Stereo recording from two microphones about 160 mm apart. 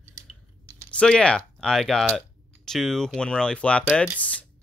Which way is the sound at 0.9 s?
5° left (ahead or behind).